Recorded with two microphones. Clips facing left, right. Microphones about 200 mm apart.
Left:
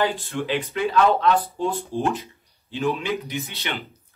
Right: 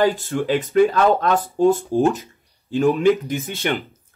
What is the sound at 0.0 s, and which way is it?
Speech, 45° right (ahead or behind).